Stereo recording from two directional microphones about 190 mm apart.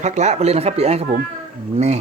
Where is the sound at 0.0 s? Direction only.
40° right (ahead or behind).